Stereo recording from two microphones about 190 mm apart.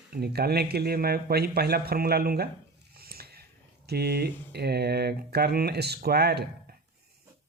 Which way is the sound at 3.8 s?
55° right (ahead or behind).